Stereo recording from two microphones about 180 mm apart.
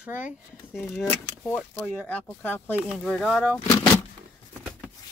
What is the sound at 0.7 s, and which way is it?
Speech, 10° left (ahead or behind).